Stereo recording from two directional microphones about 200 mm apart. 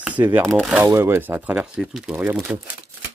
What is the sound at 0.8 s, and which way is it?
Speech, 10° right (ahead or behind).